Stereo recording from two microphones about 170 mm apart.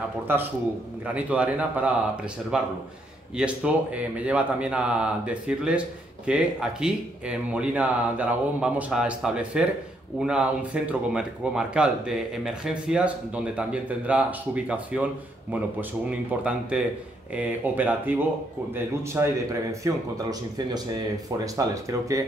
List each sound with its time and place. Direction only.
1.0 s a man's voice: 10° right (ahead or behind)